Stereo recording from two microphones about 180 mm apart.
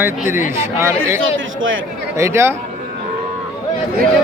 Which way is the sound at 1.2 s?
90° right.